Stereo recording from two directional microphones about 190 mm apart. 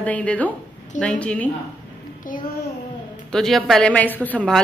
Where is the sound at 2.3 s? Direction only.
45° left (ahead or behind).